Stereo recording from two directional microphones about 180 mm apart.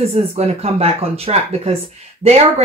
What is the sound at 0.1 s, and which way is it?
Speech, 35° right (ahead or behind).